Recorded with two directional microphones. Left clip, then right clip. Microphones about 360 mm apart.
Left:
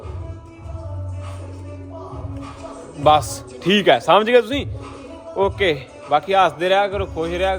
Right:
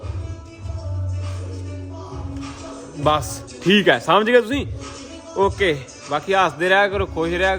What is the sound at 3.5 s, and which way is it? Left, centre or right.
A man's voice, centre.